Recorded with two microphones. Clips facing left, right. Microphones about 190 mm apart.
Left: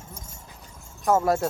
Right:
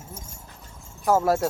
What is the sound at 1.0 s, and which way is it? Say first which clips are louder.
Speech: right 1 dB; 5° right (ahead or behind).